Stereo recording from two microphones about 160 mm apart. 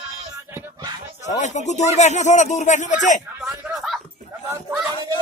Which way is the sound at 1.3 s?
45° left (ahead or behind).